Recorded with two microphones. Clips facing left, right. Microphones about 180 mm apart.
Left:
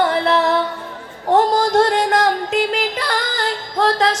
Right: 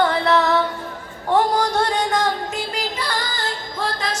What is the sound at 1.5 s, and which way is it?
Music, 90° left.